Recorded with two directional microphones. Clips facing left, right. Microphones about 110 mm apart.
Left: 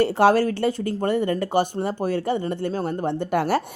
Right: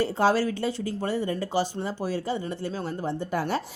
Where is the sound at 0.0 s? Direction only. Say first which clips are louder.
Left 5 dB; 65° left (ahead or behind).